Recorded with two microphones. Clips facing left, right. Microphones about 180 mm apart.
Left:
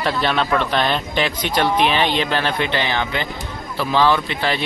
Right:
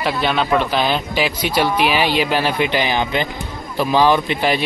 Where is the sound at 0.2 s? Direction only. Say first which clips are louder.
Right 3 dB; centre (ahead or behind).